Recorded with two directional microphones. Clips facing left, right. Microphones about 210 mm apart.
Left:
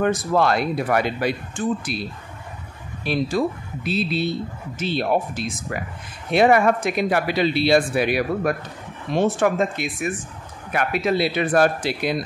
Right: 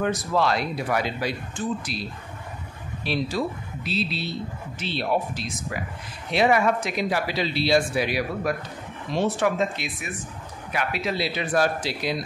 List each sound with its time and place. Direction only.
0.0 s speech: 50° left (ahead or behind)